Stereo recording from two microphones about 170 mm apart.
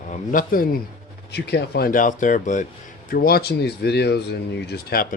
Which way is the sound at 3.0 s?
60° left (ahead or behind).